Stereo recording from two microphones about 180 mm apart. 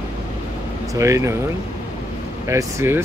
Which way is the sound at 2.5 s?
15° right (ahead or behind).